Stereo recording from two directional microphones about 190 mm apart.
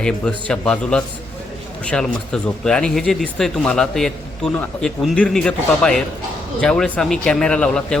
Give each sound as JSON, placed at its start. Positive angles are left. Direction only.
{"t": 0.0, "sound": "speech", "side_deg": 5}